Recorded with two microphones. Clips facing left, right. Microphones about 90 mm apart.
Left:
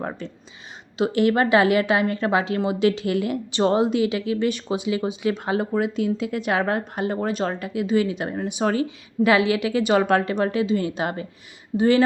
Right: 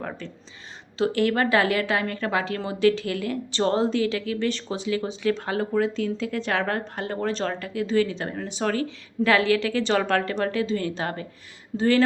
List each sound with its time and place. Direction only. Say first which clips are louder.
0.9 s a woman's voice: left 3 dB; 20° left (ahead or behind)